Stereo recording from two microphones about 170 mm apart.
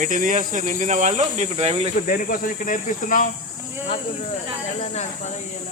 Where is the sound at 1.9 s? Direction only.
55° left (ahead or behind).